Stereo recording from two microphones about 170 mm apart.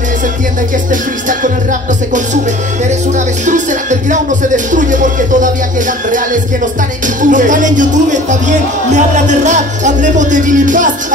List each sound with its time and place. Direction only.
1.4 s speech: 50° right (ahead or behind)
3.4 s speech: 45° right (ahead or behind)
7.2 s speech: 50° right (ahead or behind)